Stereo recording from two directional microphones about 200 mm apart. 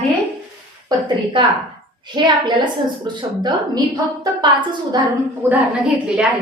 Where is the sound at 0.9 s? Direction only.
25° right (ahead or behind).